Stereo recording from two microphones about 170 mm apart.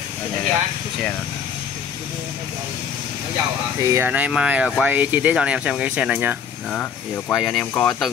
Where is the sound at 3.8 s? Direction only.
15° right (ahead or behind).